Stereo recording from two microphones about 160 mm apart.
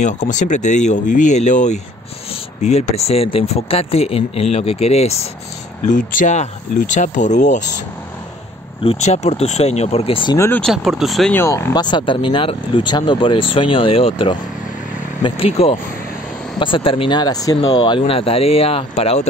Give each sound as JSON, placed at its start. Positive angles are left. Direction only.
{"t": 0.2, "sound": "speech", "side_deg": 50}
{"t": 5.9, "sound": "speech", "side_deg": 50}
{"t": 8.8, "sound": "speech", "side_deg": 45}
{"t": 10.3, "sound": "speech", "side_deg": 20}
{"t": 10.6, "sound": "speech", "side_deg": 0}
{"t": 11.3, "sound": "speech", "side_deg": 15}